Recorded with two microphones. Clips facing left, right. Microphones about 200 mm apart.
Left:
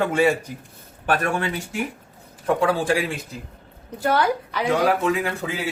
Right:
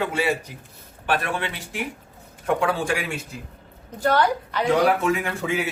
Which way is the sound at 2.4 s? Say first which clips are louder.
Left 2 dB; 35° left (ahead or behind).